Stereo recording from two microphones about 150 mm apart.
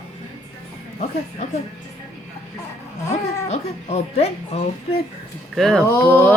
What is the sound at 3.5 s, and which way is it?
A woman's voice, 45° left (ahead or behind).